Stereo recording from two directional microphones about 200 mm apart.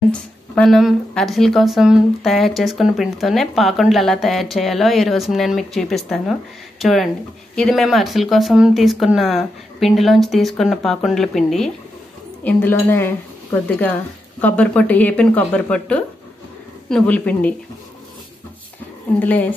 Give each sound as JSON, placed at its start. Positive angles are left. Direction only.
{"t": 0.1, "sound": "speech", "side_deg": 5}
{"t": 19.2, "sound": "speech", "side_deg": 10}